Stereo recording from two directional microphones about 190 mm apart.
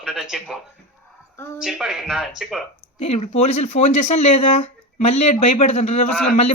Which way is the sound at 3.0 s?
35° left (ahead or behind).